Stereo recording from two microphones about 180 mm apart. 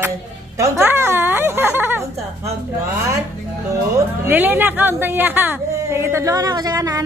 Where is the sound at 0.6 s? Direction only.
15° right (ahead or behind).